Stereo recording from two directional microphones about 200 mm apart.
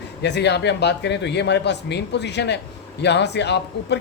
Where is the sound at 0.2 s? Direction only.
60° left (ahead or behind).